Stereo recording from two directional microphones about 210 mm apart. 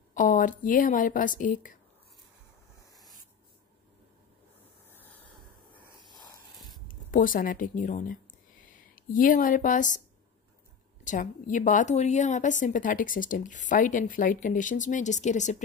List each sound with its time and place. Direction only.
0.1 s speech: 40° left (ahead or behind)
6.0 s a sound: 20° left (ahead or behind)
6.9 s speech: 40° left (ahead or behind)
11.1 s a woman's voice: 35° left (ahead or behind)